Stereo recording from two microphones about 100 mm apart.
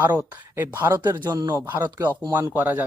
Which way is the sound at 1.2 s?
45° right (ahead or behind).